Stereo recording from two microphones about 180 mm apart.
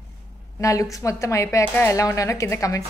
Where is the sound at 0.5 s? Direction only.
15° left (ahead or behind).